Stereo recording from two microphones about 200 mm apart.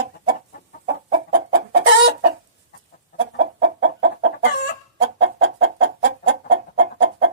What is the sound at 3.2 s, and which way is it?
Chicken, 70° right (ahead or behind).